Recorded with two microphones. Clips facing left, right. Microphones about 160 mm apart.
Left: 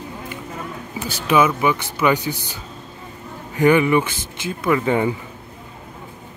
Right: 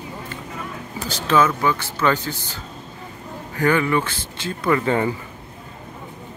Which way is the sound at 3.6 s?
15° left (ahead or behind).